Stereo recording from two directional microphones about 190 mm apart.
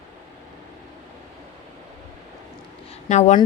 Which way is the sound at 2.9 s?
35° left (ahead or behind).